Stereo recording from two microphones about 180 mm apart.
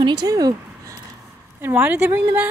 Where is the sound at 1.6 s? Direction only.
10° right (ahead or behind).